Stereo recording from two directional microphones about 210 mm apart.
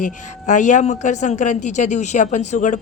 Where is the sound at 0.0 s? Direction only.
35° left (ahead or behind).